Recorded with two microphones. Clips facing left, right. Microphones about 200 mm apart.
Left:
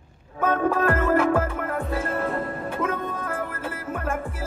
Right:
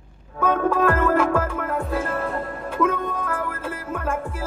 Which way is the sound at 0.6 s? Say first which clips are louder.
Right 3 dB; 60° right (ahead or behind).